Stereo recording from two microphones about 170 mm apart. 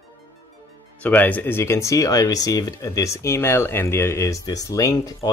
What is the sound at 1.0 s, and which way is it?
Speech, 10° left (ahead or behind).